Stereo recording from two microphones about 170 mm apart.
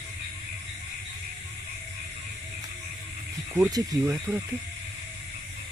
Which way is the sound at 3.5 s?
20° right (ahead or behind).